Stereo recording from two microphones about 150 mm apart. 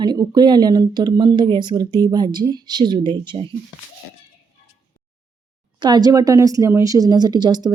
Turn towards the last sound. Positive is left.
turn(degrees=-30)  # may be behind; listen again after turning